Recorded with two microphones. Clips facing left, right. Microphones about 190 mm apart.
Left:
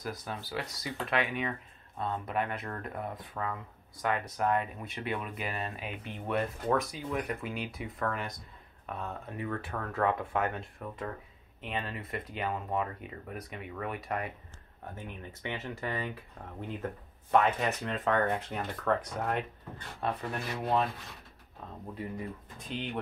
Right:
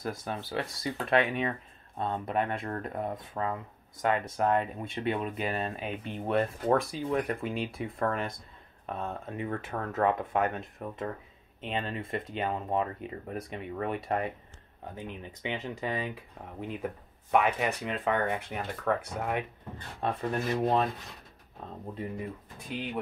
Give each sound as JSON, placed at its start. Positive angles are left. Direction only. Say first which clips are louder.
{"t": 0.0, "sound": "speech", "louder": "right 4 dB", "side_deg": -25}
{"t": 20.0, "sound": "speech", "louder": "right 4 dB", "side_deg": -25}